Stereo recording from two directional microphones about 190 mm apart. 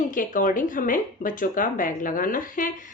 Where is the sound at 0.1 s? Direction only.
45° left (ahead or behind).